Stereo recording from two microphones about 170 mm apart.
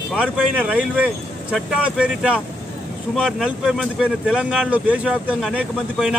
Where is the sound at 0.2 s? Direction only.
5° right (ahead or behind).